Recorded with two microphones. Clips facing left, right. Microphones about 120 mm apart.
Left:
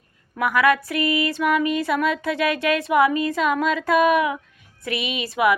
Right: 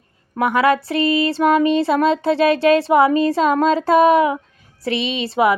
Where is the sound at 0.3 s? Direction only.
25° right (ahead or behind).